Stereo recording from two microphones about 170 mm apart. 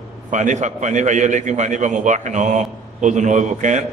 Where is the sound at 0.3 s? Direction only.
45° right (ahead or behind).